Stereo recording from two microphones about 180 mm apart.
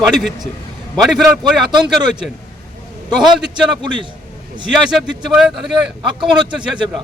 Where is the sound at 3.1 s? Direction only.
25° right (ahead or behind).